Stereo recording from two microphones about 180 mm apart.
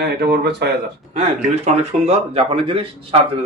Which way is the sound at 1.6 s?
35° right (ahead or behind).